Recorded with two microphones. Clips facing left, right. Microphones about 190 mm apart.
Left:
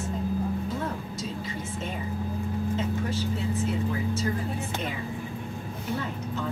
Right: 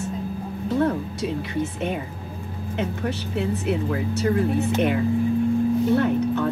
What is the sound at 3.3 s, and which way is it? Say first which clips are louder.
Speech: right 5 dB; 70° right (ahead or behind).